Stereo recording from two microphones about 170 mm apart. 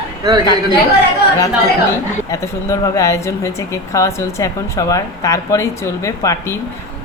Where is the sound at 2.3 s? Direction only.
20° left (ahead or behind).